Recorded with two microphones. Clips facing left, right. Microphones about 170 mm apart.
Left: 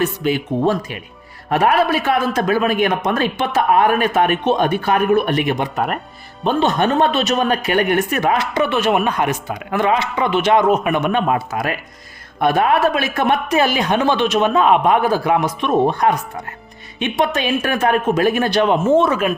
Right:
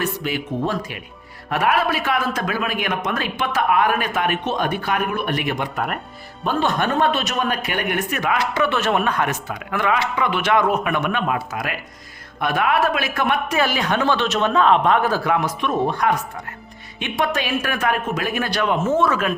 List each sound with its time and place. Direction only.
0.0 s speech: 25° left (ahead or behind)
8.5 s speech: 15° left (ahead or behind)
11.3 s speech: 35° left (ahead or behind)